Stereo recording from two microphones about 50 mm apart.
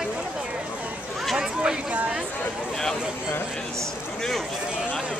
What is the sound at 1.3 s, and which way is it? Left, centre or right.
Speech, centre.